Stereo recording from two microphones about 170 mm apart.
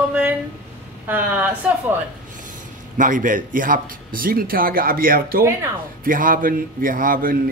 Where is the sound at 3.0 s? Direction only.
50° right (ahead or behind).